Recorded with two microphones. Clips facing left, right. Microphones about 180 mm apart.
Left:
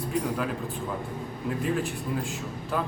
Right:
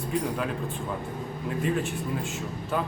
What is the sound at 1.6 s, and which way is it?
Speech, centre (ahead or behind).